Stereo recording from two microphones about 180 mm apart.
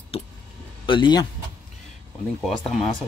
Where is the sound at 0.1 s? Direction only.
30° left (ahead or behind).